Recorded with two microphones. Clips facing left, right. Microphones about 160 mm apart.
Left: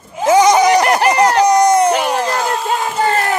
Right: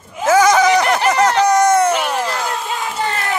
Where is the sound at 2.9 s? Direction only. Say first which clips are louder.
Left 7 dB; 45° left (ahead or behind).